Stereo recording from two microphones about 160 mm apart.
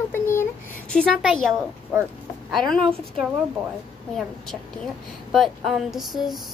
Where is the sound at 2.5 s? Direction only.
5° left (ahead or behind).